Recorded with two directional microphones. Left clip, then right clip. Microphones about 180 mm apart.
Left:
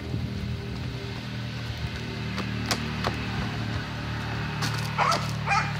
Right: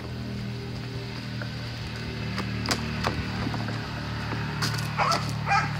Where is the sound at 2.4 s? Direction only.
10° right (ahead or behind).